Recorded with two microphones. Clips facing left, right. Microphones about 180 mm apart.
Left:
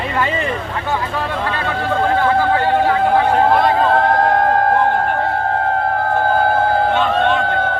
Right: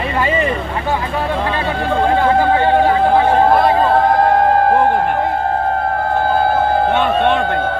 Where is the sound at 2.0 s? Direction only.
15° right (ahead or behind).